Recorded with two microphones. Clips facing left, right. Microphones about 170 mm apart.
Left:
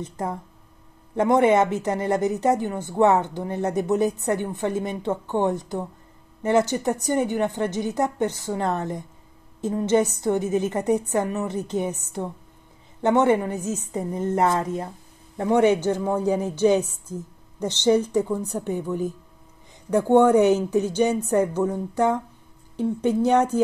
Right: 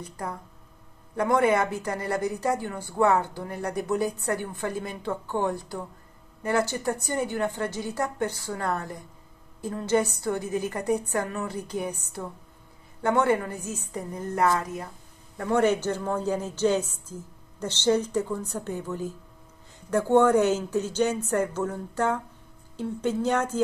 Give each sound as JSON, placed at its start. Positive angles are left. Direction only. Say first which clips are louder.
{"t": 0.0, "sound": "a woman's voice", "louder": "left 6 dB", "side_deg": 25}